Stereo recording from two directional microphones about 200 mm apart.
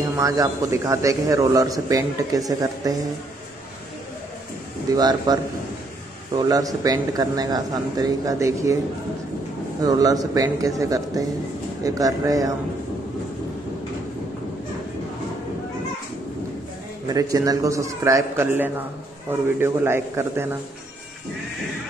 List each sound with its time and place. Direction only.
0.1 s a man's voice: 15° right (ahead or behind)
4.9 s a man's voice: 20° right (ahead or behind)
9.8 s a man's voice: 20° right (ahead or behind)
17.1 s a man's voice: 15° right (ahead or behind)